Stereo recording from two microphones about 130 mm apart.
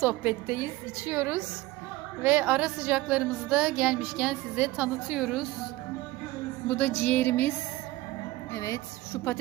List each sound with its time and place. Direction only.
0.0 s a woman's voice: 10° right (ahead or behind)
6.7 s a woman's voice: 10° left (ahead or behind)
8.5 s a woman's voice: 25° left (ahead or behind)